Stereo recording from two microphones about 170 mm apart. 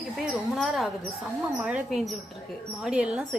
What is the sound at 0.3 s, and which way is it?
Speech, 5° right (ahead or behind).